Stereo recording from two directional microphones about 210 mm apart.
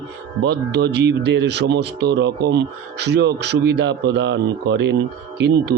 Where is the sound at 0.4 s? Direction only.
50° right (ahead or behind).